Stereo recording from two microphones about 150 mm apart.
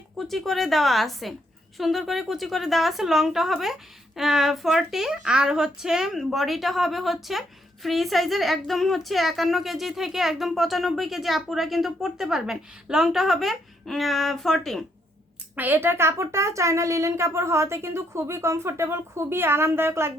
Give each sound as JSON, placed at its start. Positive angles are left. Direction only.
{"t": 0.2, "sound": "a woman's voice", "side_deg": 0}
{"t": 15.5, "sound": "speech", "side_deg": -10}